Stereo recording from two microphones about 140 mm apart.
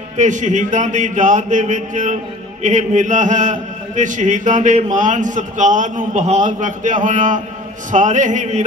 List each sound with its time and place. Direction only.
0.2 s a man's voice: 60° right (ahead or behind)